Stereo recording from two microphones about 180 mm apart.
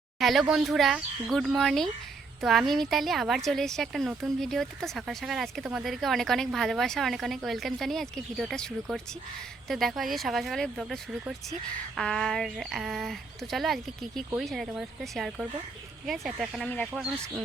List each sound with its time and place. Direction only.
0.2 s speech: centre (ahead or behind)
16.6 s speech: 10° left (ahead or behind)
16.9 s speech: 5° right (ahead or behind)